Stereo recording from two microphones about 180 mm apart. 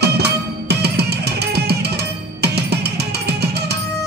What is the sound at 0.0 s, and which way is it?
Music, 65° right (ahead or behind).